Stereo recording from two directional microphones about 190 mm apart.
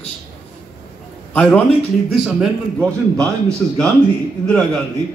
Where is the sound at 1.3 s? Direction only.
10° left (ahead or behind).